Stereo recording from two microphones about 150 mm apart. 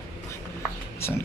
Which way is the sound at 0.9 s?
15° left (ahead or behind).